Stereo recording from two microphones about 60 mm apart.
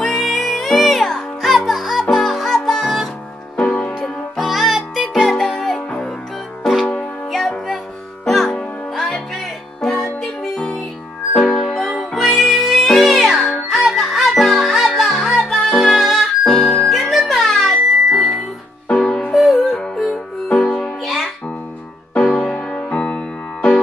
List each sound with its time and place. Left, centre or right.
0.0 s music: centre
3.5 s music: centre
4.0 s music: centre
6.6 s music: centre
18.9 s music: centre
21.0 s music: centre
22.4 s music: centre